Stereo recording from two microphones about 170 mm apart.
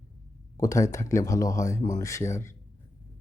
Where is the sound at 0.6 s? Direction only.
20° left (ahead or behind).